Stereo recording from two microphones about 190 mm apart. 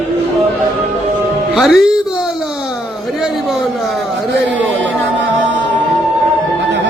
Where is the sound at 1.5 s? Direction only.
Centre (ahead or behind).